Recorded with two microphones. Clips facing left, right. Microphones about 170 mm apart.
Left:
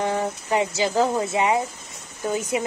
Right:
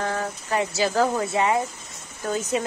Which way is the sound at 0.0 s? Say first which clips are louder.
Left 3 dB; 15° left (ahead or behind).